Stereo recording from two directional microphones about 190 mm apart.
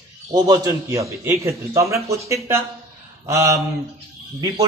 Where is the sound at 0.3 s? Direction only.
20° right (ahead or behind).